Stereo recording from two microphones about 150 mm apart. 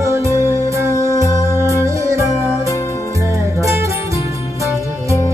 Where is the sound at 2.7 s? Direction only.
20° left (ahead or behind).